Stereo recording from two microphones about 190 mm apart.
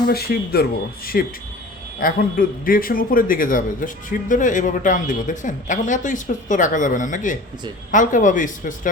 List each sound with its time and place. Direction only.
0.1 s a man's voice: 55° left (ahead or behind)